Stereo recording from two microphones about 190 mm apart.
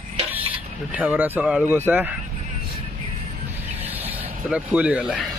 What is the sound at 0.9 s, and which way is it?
Speech, 10° right (ahead or behind).